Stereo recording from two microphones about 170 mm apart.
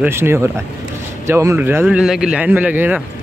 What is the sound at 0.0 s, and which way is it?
Speech, 15° right (ahead or behind).